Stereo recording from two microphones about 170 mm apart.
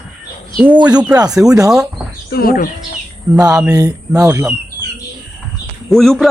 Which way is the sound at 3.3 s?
20° right (ahead or behind).